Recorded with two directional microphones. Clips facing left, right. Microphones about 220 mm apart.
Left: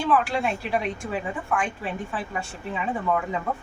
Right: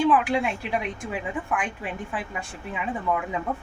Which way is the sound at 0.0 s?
20° right (ahead or behind).